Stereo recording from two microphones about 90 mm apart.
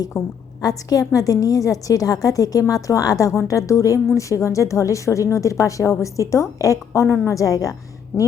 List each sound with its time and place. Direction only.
0.1 s a woman's voice: 30° left (ahead or behind)
0.6 s a woman's voice: 45° left (ahead or behind)